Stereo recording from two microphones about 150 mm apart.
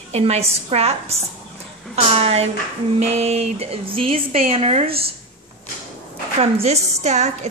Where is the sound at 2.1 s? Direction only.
45° right (ahead or behind).